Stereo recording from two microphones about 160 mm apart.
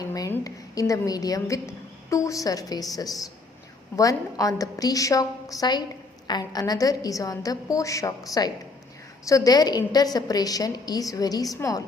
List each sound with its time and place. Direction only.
0.0 s a woman's voice: 20° left (ahead or behind)